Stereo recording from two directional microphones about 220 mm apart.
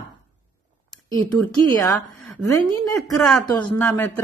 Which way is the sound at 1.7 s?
15° left (ahead or behind).